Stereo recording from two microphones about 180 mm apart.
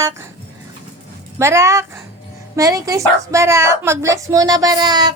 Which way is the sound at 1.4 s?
15° right (ahead or behind).